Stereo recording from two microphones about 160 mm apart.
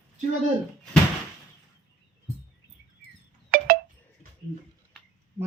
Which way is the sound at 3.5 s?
65° right (ahead or behind).